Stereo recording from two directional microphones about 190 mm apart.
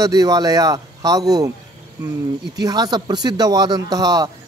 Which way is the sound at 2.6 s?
20° right (ahead or behind).